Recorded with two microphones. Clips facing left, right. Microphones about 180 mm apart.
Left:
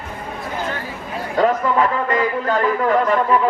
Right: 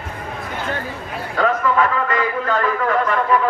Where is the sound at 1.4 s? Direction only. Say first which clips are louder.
Left 1 dB; 30° left (ahead or behind).